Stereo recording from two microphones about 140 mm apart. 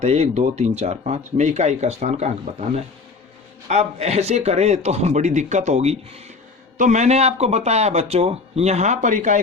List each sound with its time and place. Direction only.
0.0 s speech: 50° right (ahead or behind)
6.7 s speech: 60° right (ahead or behind)